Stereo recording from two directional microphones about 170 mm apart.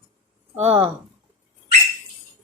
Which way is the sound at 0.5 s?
35° right (ahead or behind).